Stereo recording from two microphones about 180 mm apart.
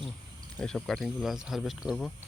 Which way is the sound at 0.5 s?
5° left (ahead or behind).